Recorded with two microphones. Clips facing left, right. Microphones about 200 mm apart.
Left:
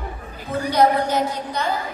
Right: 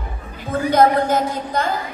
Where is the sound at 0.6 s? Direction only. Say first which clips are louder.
Right 3 dB; 50° right (ahead or behind).